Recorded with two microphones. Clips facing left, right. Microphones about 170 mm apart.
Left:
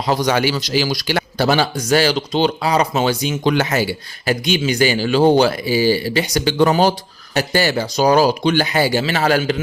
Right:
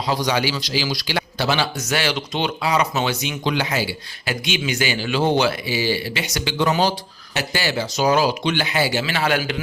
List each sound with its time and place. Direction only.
0.0 s a man's voice: 50° left (ahead or behind)
3.4 s speech: 50° left (ahead or behind)